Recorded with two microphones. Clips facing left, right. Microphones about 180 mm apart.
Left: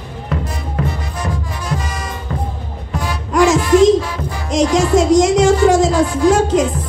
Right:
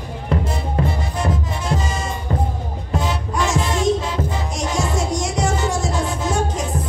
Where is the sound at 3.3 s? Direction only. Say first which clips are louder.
Left 11 dB; 90° left.